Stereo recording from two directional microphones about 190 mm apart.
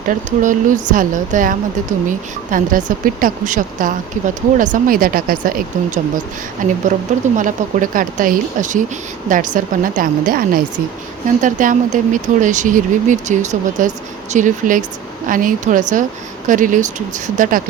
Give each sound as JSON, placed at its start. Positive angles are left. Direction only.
{"t": 0.1, "sound": "speech", "side_deg": -40}